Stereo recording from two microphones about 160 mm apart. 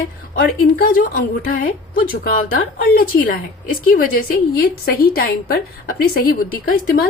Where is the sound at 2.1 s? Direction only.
70° left (ahead or behind).